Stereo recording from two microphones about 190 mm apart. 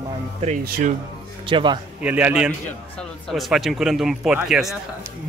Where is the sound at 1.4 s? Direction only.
25° right (ahead or behind).